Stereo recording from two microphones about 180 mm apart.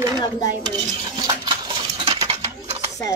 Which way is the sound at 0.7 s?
25° right (ahead or behind).